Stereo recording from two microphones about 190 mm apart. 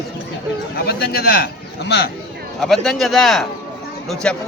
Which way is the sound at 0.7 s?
55° left (ahead or behind).